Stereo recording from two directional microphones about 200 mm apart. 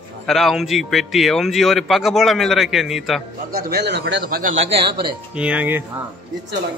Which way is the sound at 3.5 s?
50° right (ahead or behind).